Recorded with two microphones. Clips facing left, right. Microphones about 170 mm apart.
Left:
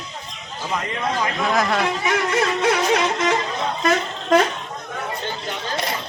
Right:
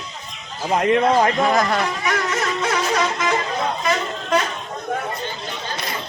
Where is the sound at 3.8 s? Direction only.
50° left (ahead or behind).